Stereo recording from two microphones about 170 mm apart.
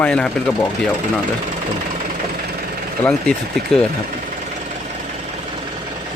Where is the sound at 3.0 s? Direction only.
5° left (ahead or behind).